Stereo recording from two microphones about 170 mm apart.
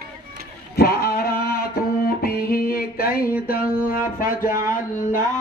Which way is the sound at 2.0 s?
60° left (ahead or behind).